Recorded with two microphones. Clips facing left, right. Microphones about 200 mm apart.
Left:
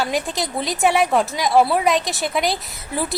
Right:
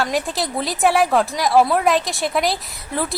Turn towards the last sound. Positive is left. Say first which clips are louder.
# even
turn(degrees=0)  # may be behind; listen again after turning